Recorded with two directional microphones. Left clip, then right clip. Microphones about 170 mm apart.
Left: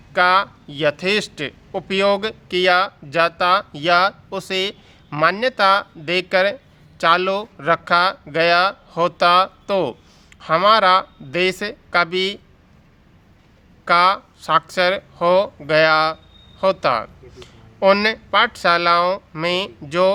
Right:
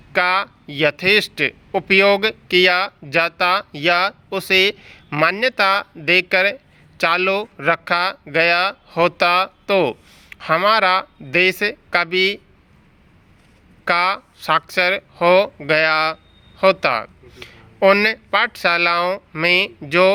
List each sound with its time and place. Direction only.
0.1 s speech: 25° right (ahead or behind)
13.8 s speech: 20° right (ahead or behind)